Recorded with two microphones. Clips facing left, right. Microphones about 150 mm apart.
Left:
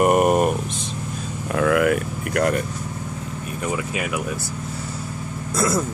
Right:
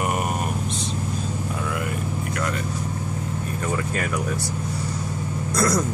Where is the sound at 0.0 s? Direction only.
50° left (ahead or behind).